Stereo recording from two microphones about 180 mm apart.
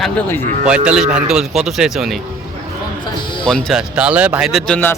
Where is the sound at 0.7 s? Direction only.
5° right (ahead or behind).